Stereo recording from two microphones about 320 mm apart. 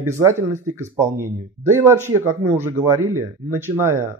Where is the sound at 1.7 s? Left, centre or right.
Centre.